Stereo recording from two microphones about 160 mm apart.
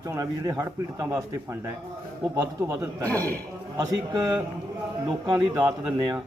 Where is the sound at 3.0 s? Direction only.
10° left (ahead or behind).